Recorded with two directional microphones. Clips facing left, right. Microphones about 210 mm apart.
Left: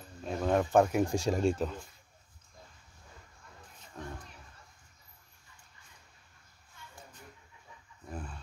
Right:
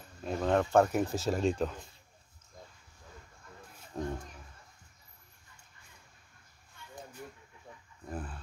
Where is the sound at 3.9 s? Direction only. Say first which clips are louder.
Right 8 dB; 30° right (ahead or behind).